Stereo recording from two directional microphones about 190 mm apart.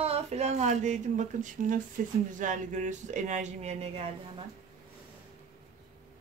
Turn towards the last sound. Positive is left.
turn(degrees=-35)  # may be behind; listen again after turning